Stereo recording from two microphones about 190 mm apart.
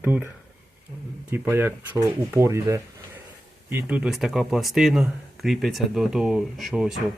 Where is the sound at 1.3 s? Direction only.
10° right (ahead or behind).